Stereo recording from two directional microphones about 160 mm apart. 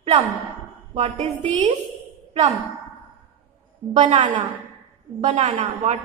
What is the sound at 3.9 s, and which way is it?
A woman's voice, 40° right (ahead or behind).